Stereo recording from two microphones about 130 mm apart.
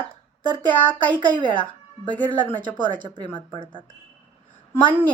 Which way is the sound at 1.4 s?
40° left (ahead or behind).